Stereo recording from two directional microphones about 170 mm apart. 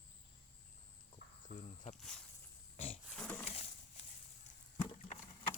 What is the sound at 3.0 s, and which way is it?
Dog, 5° left (ahead or behind).